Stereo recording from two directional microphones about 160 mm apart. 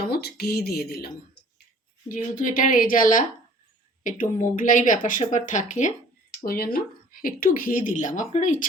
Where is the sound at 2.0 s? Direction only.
55° left (ahead or behind).